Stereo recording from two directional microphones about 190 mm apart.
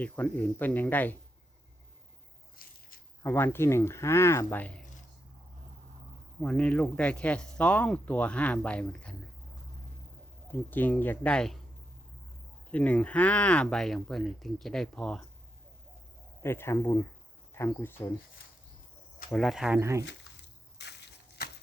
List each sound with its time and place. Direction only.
0.0 s speech: 10° left (ahead or behind)
2.6 s a sound: 50° left (ahead or behind)
3.2 s speech: 10° left (ahead or behind)
6.4 s speech: 5° left (ahead or behind)
10.5 s speech: 10° left (ahead or behind)
12.7 s speech: 5° left (ahead or behind)
16.4 s speech: 15° left (ahead or behind)
19.3 s speech: centre (ahead or behind); by 20.1 s 15° right (ahead or behind)
20.7 s a sound: 65° left (ahead or behind)